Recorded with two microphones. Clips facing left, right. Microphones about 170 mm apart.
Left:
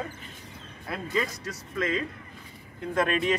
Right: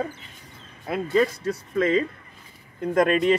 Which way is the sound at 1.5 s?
30° right (ahead or behind).